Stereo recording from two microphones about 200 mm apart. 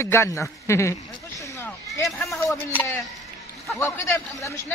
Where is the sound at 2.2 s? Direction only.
Centre (ahead or behind).